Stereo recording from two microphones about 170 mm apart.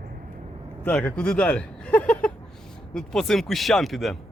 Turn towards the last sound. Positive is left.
turn(degrees=0)  # may be behind; listen again after turning